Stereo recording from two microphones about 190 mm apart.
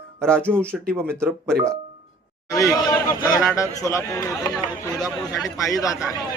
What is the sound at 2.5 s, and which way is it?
A man's voice, 20° left (ahead or behind).